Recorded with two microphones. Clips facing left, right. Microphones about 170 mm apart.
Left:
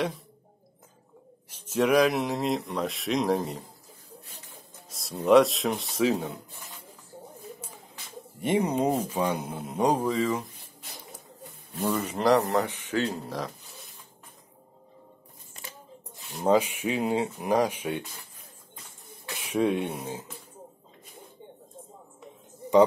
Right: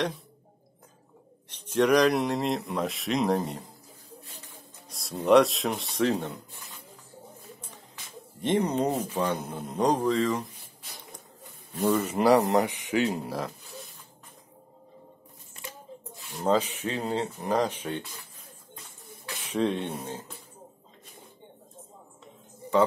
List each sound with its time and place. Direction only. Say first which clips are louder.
1.5 s speech: right 1 dB; 5° left (ahead or behind)
4.8 s speech: left 1 dB; centre (ahead or behind)
8.4 s a man's voice: even; 10° left (ahead or behind)
11.8 s speech: right 3 dB; centre (ahead or behind)
16.4 s a man's voice: left 2 dB; 10° left (ahead or behind)
19.2 s speech: left 2 dB; 10° left (ahead or behind)